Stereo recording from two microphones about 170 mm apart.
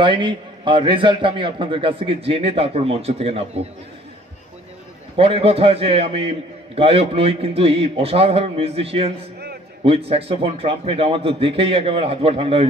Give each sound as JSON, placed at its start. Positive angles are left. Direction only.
{"t": 0.0, "sound": "a man's voice", "side_deg": -30}
{"t": 5.1, "sound": "a man's voice", "side_deg": -35}